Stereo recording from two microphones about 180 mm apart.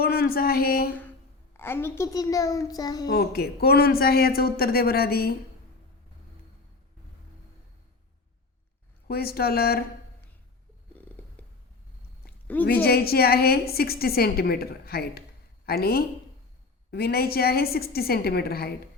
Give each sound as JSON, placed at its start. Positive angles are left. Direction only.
{"t": 0.0, "sound": "speech", "side_deg": 55}
{"t": 1.5, "sound": "a child's voice", "side_deg": 15}
{"t": 3.1, "sound": "a woman's voice", "side_deg": 60}
{"t": 9.0, "sound": "a woman's voice", "side_deg": 60}
{"t": 11.4, "sound": "a sound", "side_deg": 10}
{"t": 12.6, "sound": "a woman's voice", "side_deg": 60}